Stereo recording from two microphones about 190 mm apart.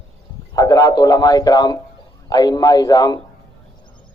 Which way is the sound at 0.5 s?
20° left (ahead or behind).